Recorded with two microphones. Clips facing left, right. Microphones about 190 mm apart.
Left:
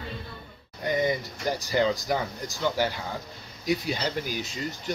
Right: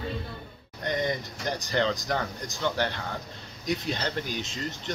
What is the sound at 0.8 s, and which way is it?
Speech, 5° left (ahead or behind).